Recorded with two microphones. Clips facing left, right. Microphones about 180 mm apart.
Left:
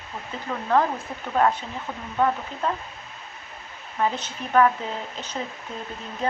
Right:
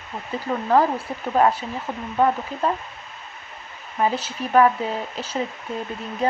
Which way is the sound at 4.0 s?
10° right (ahead or behind).